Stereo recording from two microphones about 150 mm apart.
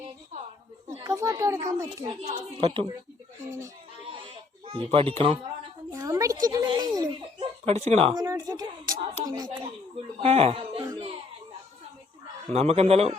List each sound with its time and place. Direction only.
1.0 s a child's voice: 20° right (ahead or behind)
2.0 s speech: 40° right (ahead or behind)
4.6 s speech: 40° right (ahead or behind)
5.9 s a sound: 20° right (ahead or behind)
6.4 s a child's voice: 25° right (ahead or behind)
7.7 s a man's voice: 45° right (ahead or behind)
8.1 s a woman's voice: 25° right (ahead or behind)
10.2 s speech: 40° right (ahead or behind)
12.5 s a man's voice: 45° right (ahead or behind)